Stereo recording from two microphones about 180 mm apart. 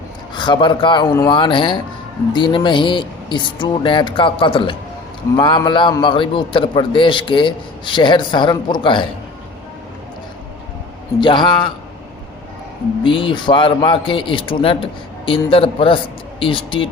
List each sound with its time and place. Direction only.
0.3 s a man's voice: 25° left (ahead or behind)
11.2 s a man's voice: 25° left (ahead or behind)
13.0 s a man's voice: 30° left (ahead or behind)